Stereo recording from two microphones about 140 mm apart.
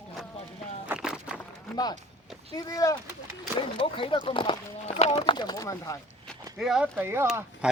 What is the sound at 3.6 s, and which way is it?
Speech, 40° left (ahead or behind).